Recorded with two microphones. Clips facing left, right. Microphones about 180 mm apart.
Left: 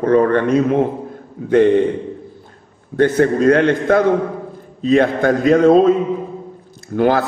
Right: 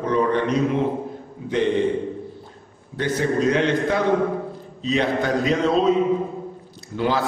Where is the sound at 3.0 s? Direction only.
55° left (ahead or behind).